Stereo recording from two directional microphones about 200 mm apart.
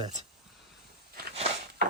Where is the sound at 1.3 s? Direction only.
30° right (ahead or behind).